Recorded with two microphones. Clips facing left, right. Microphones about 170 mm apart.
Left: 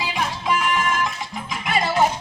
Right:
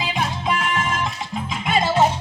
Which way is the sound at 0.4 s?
25° right (ahead or behind).